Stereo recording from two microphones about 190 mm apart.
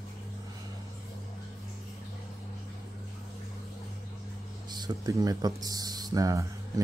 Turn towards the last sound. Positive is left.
turn(degrees=-20)  # may be behind; listen again after turning